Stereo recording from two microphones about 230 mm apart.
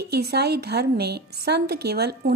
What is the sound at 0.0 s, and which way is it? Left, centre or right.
A woman's voice, right.